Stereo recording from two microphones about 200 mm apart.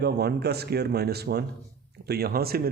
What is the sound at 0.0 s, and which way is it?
A man's voice, 55° right (ahead or behind).